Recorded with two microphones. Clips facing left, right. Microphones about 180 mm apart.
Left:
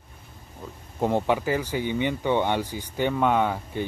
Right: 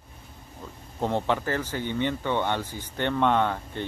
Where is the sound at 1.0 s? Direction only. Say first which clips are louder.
Left 3 dB; 10° left (ahead or behind).